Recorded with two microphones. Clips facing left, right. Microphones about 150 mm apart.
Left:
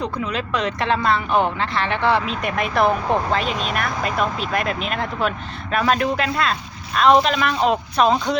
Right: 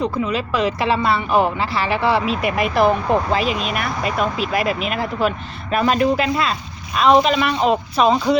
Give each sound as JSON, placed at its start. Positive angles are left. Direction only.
{"t": 0.0, "sound": "speech", "side_deg": -5}